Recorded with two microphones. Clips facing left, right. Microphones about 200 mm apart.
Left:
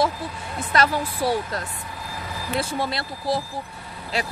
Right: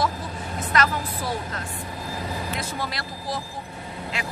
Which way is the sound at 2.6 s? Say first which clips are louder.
Left 5 dB; 30° left (ahead or behind).